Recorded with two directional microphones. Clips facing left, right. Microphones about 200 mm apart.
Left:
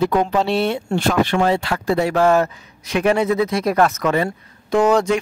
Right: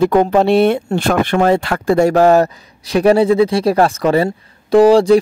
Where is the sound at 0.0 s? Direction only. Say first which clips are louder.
Right 6 dB; 50° right (ahead or behind).